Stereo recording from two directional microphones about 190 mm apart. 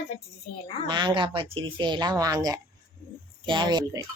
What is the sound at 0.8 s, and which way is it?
Speech, 25° right (ahead or behind).